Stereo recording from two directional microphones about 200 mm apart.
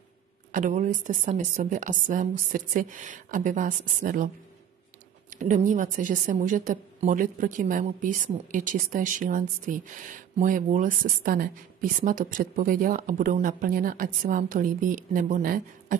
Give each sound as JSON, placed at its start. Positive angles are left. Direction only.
{"t": 0.5, "sound": "speech", "side_deg": -40}
{"t": 5.3, "sound": "speech", "side_deg": -40}